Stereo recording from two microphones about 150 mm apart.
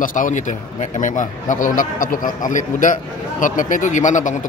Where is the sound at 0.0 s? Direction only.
60° left (ahead or behind).